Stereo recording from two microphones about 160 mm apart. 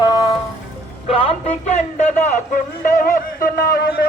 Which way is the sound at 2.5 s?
60° left (ahead or behind).